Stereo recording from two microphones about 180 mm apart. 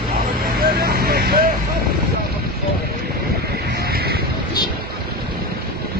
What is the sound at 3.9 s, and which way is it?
Vehicle, 60° right (ahead or behind).